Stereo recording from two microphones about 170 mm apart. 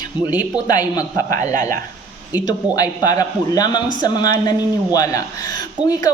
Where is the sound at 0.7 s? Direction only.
20° left (ahead or behind).